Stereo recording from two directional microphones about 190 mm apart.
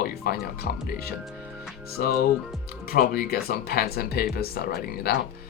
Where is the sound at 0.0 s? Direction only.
55° left (ahead or behind).